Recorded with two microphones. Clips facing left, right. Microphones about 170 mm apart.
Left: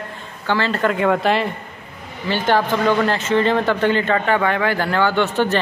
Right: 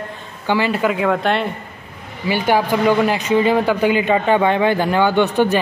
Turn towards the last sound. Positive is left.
turn(degrees=-15)  # may be behind; listen again after turning